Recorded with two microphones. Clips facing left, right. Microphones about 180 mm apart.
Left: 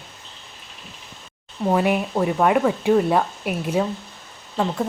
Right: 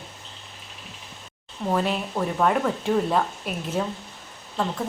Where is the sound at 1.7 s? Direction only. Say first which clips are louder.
Left 5 dB; 10° left (ahead or behind).